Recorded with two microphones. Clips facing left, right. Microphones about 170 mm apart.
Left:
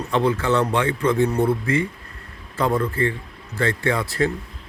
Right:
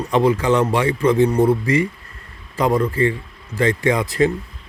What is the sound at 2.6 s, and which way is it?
Speech, 15° right (ahead or behind).